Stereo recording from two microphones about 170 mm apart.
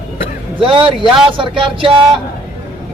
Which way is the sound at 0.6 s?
30° right (ahead or behind).